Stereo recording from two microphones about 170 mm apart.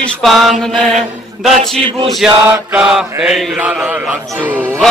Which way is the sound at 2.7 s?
5° right (ahead or behind).